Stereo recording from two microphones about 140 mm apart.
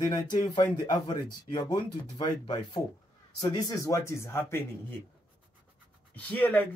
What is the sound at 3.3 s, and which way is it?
Speech, 25° left (ahead or behind).